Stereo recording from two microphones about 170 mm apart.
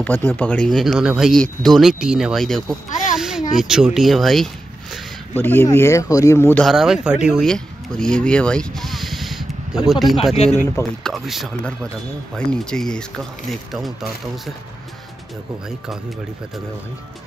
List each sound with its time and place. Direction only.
0.0 s speech: 10° left (ahead or behind)
2.9 s a sound: 45° left (ahead or behind)
3.2 s a sound: 5° right (ahead or behind)
3.5 s speech: 5° right (ahead or behind)
5.4 s speech: 10° left (ahead or behind)
6.6 s speech: centre (ahead or behind)
10.3 s speech: 40° left (ahead or behind)
11.1 s speech: centre (ahead or behind)